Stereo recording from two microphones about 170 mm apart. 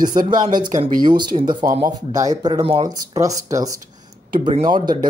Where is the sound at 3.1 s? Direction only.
20° right (ahead or behind).